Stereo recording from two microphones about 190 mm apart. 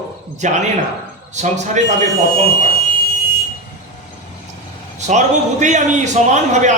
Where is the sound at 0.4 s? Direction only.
40° right (ahead or behind).